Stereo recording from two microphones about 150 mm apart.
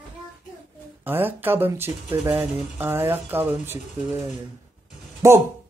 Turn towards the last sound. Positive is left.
turn(degrees=-20)  # may be behind; listen again after turning